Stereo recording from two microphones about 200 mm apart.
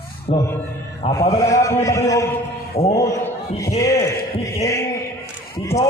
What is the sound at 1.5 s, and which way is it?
Speech, 15° left (ahead or behind).